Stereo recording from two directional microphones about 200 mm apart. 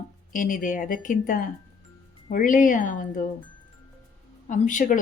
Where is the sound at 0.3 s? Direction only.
40° left (ahead or behind).